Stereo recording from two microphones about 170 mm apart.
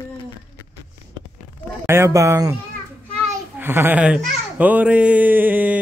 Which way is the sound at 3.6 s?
10° right (ahead or behind).